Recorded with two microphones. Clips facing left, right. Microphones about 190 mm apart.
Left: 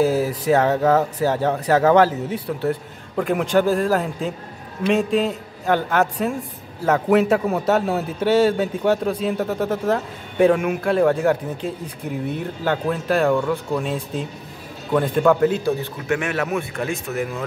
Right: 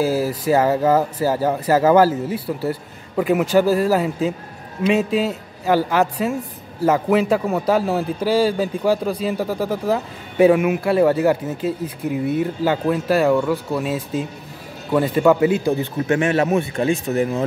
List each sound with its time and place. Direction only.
0.0 s a man's voice: centre (ahead or behind)
16.1 s speech: 30° right (ahead or behind)